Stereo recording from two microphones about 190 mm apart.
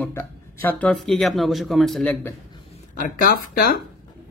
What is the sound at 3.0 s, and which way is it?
Speech, 50° left (ahead or behind).